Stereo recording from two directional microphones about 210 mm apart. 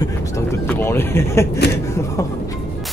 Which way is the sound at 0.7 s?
10° left (ahead or behind).